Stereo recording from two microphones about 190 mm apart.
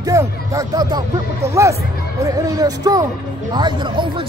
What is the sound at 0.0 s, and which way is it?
Speech, 15° right (ahead or behind).